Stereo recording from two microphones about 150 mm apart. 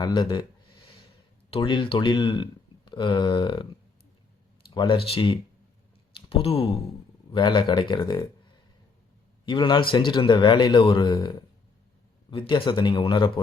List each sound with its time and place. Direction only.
0.0 s speech: 30° left (ahead or behind)
1.5 s speech: 30° left (ahead or behind)
4.7 s speech: 30° left (ahead or behind)
9.5 s speech: 30° left (ahead or behind)